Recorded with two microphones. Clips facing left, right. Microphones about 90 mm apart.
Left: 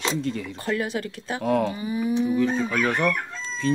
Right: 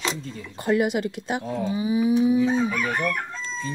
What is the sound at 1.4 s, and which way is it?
Chicken, 75° left (ahead or behind).